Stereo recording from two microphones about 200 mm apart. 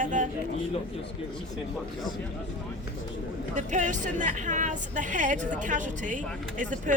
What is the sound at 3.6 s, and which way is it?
Speech, 40° right (ahead or behind).